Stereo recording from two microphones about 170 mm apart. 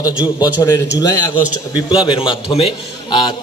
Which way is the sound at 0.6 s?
20° left (ahead or behind).